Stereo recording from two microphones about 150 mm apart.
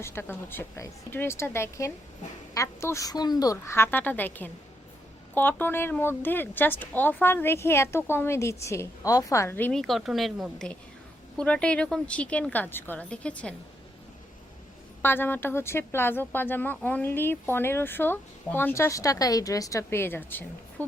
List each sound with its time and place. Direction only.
0.0 s speech: 15° left (ahead or behind)
9.8 s speech: centre (ahead or behind)
15.0 s speech: 15° left (ahead or behind)